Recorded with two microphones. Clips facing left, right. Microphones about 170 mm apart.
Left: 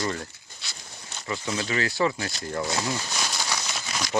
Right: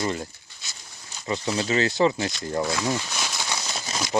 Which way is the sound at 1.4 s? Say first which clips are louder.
Right 4 dB; 30° right (ahead or behind).